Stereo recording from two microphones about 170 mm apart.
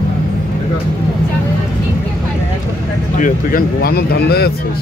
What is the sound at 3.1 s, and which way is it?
Speech, 50° left (ahead or behind).